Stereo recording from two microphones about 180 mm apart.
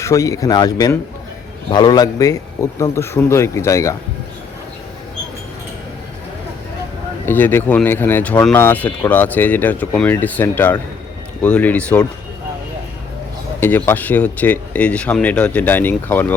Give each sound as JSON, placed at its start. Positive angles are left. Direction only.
{"t": 0.0, "sound": "speech", "side_deg": 15}
{"t": 7.3, "sound": "speech", "side_deg": 10}
{"t": 13.6, "sound": "speech", "side_deg": 10}